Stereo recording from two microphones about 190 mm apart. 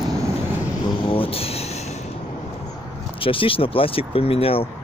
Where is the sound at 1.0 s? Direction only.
30° left (ahead or behind).